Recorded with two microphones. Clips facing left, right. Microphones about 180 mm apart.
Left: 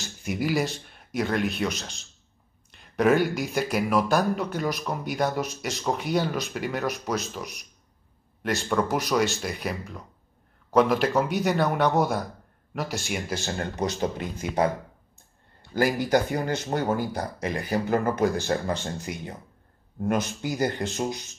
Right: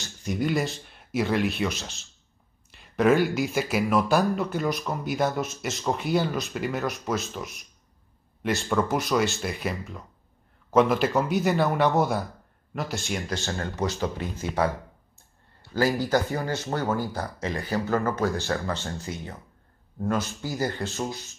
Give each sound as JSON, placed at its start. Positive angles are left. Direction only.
{"t": 0.4, "sound": "speech", "side_deg": 0}
{"t": 13.7, "sound": "speech", "side_deg": 20}